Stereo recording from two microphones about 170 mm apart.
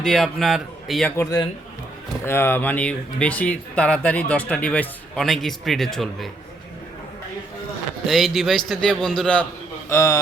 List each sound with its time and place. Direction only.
0.0 s a man's voice: centre (ahead or behind)
1.1 s speech: 15° left (ahead or behind); by 6.3 s centre (ahead or behind)
8.0 s a man's voice: centre (ahead or behind)
9.9 s speech: 15° left (ahead or behind)